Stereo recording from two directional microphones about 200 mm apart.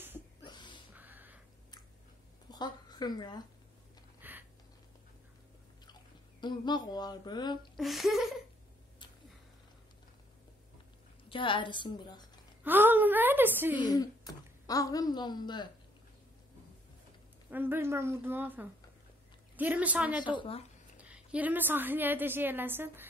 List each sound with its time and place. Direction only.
0.5 s a sound: 20° left (ahead or behind)
0.9 s a sound: 10° right (ahead or behind)
2.5 s a woman's voice: 20° left (ahead or behind)
4.2 s a sound: 10° right (ahead or behind)
6.4 s speech: 20° left (ahead or behind)
7.7 s speech: centre (ahead or behind)
11.2 s speech: 25° left (ahead or behind)
12.6 s a woman's voice: 10° right (ahead or behind)
13.8 s a woman's voice: 20° left (ahead or behind)
17.5 s a woman's voice: 10° right (ahead or behind)
20.2 s speech: 25° left (ahead or behind)
21.0 s a woman's voice: 5° right (ahead or behind)